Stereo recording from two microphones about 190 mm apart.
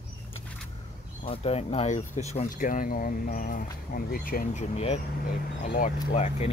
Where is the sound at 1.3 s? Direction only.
30° left (ahead or behind); by 4.4 s 50° left (ahead or behind).